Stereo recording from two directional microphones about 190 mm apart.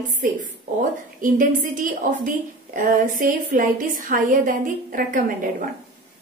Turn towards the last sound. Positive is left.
turn(degrees=-45)  # may be behind; listen again after turning